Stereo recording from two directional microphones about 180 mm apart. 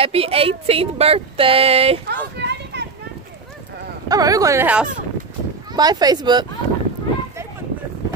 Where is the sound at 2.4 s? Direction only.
70° right (ahead or behind).